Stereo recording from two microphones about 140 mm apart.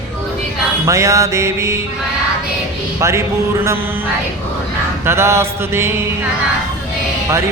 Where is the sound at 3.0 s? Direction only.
20° right (ahead or behind).